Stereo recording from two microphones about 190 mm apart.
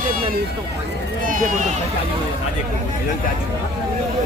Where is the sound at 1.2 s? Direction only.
40° right (ahead or behind).